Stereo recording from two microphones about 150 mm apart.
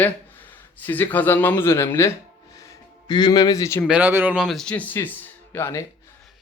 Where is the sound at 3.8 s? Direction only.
10° right (ahead or behind).